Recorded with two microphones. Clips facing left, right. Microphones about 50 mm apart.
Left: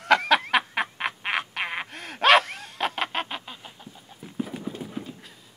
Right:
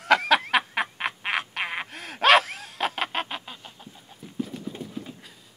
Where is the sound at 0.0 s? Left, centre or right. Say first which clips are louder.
Even; centre.